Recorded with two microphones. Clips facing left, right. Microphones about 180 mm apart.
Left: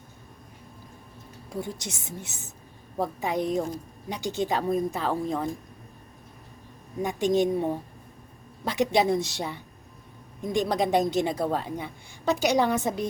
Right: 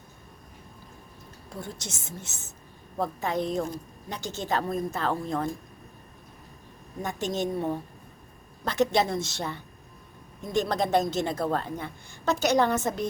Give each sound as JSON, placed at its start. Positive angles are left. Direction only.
{"t": 1.6, "sound": "a woman's voice", "side_deg": 15}
{"t": 7.0, "sound": "a woman's voice", "side_deg": 15}